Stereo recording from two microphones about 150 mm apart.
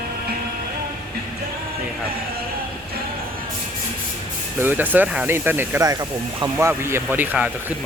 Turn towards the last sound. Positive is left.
turn(degrees=-10)  # may be behind; listen again after turning